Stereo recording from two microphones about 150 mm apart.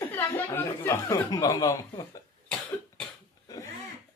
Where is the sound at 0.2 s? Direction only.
15° left (ahead or behind).